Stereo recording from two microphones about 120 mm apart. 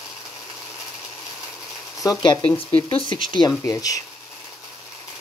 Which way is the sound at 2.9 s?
45° left (ahead or behind).